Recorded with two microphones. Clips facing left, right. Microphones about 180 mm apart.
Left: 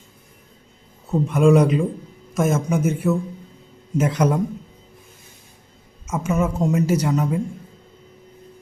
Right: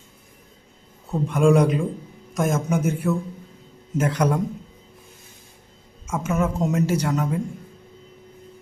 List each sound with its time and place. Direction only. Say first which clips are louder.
1.1 s a man's voice: left 2 dB; centre (ahead or behind)
6.1 s a man's voice: left 2 dB; centre (ahead or behind)